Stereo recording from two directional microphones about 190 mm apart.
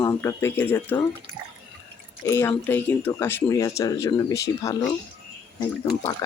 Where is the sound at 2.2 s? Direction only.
15° left (ahead or behind).